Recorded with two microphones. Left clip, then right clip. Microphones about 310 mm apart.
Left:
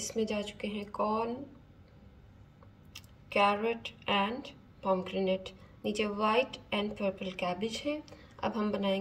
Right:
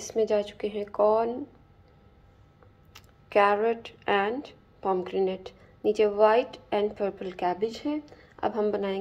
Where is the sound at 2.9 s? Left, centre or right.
Centre.